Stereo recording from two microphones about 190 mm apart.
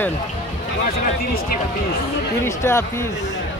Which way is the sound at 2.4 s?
15° left (ahead or behind).